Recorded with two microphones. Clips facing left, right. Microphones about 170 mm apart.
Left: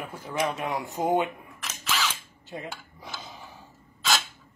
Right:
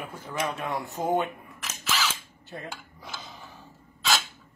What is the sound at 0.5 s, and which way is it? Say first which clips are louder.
Speech: left 1 dB; 15° left (ahead or behind).